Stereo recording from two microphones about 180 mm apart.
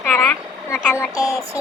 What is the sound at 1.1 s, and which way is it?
Child singing, 20° left (ahead or behind).